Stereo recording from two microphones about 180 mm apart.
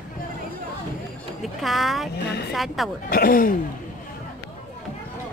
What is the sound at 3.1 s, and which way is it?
Speech, 50° left (ahead or behind).